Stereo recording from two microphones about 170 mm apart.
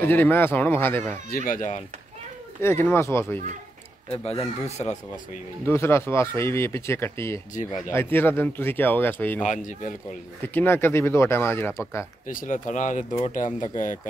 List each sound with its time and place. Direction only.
0.0 s speech: 10° left (ahead or behind)
1.3 s speech: 55° left (ahead or behind)
2.6 s speech: 15° left (ahead or behind)
4.2 s speech: 35° left (ahead or behind)
5.7 s speech: 15° left (ahead or behind)
9.4 s speech: 45° left (ahead or behind)
10.4 s speech: 15° left (ahead or behind)
12.3 s speech: 50° left (ahead or behind)